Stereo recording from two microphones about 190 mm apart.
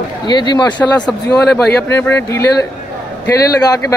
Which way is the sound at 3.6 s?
20° left (ahead or behind).